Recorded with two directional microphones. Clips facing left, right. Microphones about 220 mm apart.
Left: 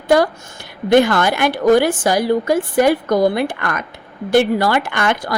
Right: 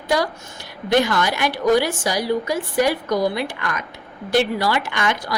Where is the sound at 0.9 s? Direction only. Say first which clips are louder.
Left 6 dB; 55° left (ahead or behind).